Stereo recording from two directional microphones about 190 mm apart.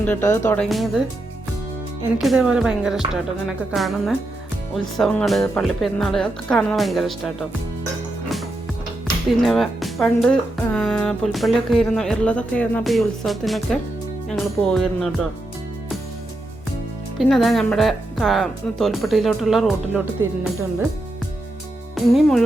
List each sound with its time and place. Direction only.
0.0 s speech: 10° left (ahead or behind)
2.0 s speech: 10° right (ahead or behind)
9.4 s speech: centre (ahead or behind)
17.2 s speech: centre (ahead or behind)
20.2 s speech: 15° right (ahead or behind)
21.9 s speech: centre (ahead or behind)